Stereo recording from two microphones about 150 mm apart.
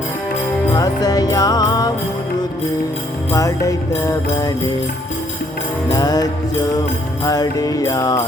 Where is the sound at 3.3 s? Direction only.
20° left (ahead or behind).